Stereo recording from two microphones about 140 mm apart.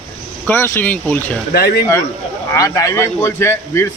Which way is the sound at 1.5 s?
90° left.